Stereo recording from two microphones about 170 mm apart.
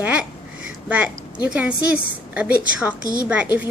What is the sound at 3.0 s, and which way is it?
Speech, 55° right (ahead or behind).